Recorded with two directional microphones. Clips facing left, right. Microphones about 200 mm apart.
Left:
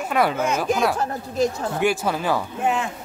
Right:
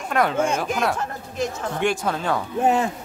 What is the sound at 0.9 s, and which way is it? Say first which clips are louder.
Speech: left 4 dB; 35° left (ahead or behind).